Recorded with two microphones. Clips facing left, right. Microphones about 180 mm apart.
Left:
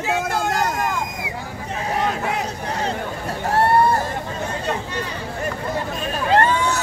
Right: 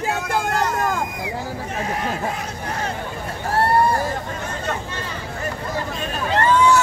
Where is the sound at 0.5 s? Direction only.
40° left (ahead or behind).